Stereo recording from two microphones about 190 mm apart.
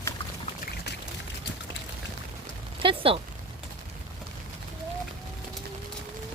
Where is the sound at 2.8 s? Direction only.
30° right (ahead or behind).